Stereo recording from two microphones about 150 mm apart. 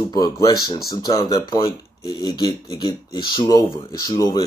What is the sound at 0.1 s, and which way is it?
Speech, 25° left (ahead or behind).